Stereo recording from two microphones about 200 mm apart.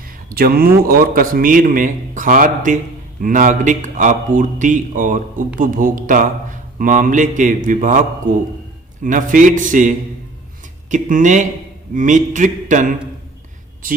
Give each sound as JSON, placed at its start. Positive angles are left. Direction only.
{"t": 0.3, "sound": "a man's voice", "side_deg": -50}